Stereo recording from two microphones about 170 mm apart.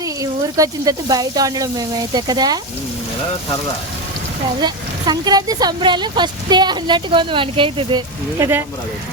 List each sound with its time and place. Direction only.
0.0 s speech: 20° right (ahead or behind)
4.6 s speech: 25° right (ahead or behind)